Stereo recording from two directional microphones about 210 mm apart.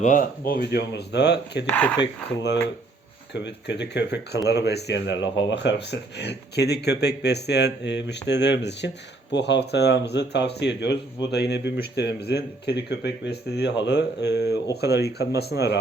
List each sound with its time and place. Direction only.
0.0 s speech: 40° left (ahead or behind)
1.6 s speech: 5° left (ahead or behind)
2.0 s speech: 55° left (ahead or behind)